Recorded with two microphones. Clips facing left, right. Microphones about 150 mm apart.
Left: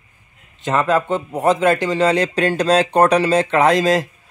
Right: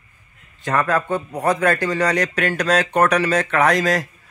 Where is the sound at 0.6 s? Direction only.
20° left (ahead or behind).